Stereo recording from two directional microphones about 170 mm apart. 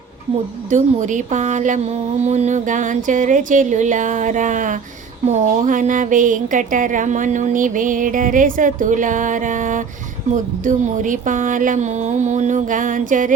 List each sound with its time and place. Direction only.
0.7 s speech: 45° right (ahead or behind)